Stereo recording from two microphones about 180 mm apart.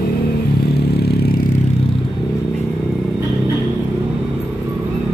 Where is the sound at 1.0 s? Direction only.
60° left (ahead or behind).